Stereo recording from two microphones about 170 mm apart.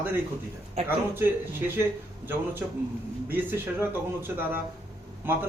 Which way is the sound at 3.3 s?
10° right (ahead or behind).